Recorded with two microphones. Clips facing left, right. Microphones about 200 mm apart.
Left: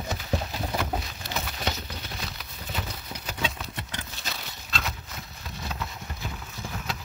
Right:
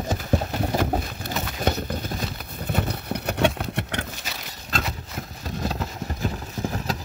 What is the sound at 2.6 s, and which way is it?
Horse, 60° right (ahead or behind).